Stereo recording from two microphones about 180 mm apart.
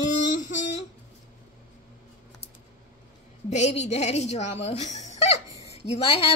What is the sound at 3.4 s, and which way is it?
Speech, 40° left (ahead or behind).